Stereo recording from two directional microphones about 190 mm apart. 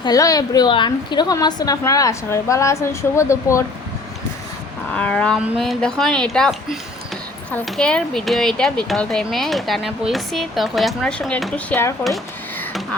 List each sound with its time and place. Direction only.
0.0 s a woman's voice: 20° left (ahead or behind)
4.9 s speech: 5° left (ahead or behind)
12.0 s a sound: centre (ahead or behind)